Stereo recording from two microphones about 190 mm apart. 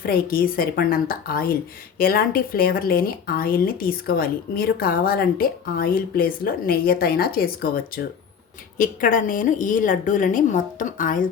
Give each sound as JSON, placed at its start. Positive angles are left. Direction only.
{"t": 0.0, "sound": "speech", "side_deg": 50}